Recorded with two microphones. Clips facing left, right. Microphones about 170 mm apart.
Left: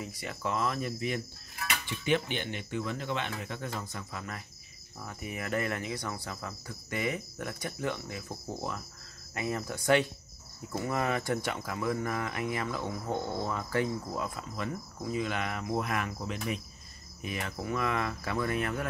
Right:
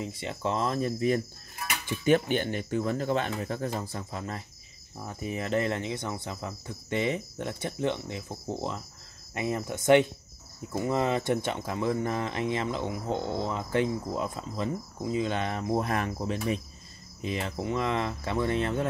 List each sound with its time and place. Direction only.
0.0 s speech: 25° right (ahead or behind)